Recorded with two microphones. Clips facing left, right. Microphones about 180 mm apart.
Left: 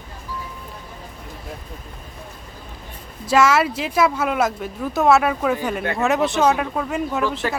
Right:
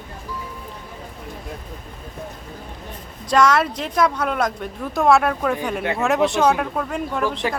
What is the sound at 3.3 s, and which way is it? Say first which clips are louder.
Speech: even; 5° left (ahead or behind).